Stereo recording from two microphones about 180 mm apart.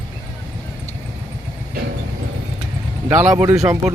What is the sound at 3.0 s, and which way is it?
Speech, 10° right (ahead or behind).